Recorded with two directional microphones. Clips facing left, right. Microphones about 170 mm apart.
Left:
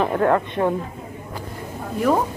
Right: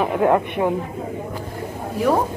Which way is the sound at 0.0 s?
15° right (ahead or behind).